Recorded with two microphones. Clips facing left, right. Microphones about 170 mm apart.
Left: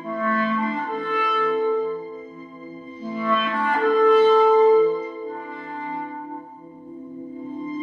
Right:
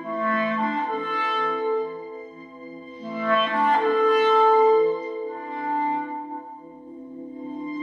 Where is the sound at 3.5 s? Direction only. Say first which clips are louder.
Left 3 dB; 25° right (ahead or behind).